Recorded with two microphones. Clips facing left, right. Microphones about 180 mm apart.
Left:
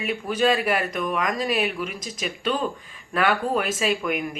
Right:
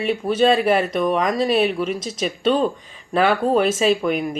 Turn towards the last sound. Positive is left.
turn(degrees=-35)  # may be behind; listen again after turning